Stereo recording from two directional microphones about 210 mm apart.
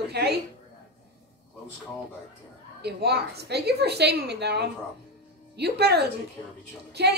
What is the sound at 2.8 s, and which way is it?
A woman's voice, 50° right (ahead or behind).